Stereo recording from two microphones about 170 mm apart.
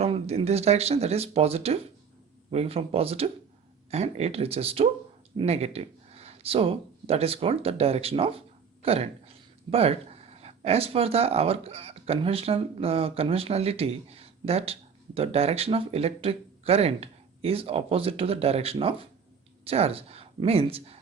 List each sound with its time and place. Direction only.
0.0 s speech: 35° right (ahead or behind)